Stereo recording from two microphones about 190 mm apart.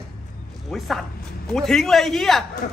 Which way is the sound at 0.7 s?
Centre (ahead or behind).